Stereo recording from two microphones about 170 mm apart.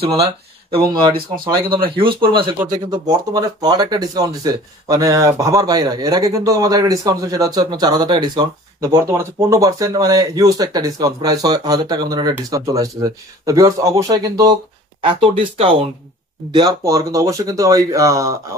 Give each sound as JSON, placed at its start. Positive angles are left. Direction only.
{"t": 2.0, "sound": "speech", "side_deg": -30}
{"t": 16.5, "sound": "speech", "side_deg": -20}